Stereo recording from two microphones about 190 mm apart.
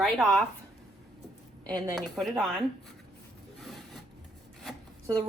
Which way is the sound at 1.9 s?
Centre (ahead or behind).